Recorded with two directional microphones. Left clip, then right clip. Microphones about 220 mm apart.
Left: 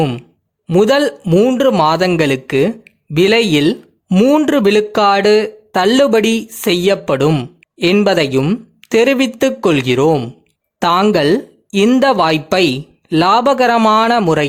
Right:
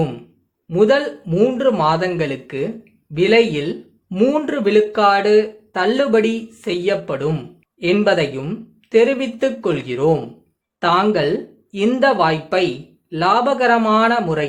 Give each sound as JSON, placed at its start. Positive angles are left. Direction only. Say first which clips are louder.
{"t": 0.7, "sound": "speech", "louder": "left 3 dB", "side_deg": 50}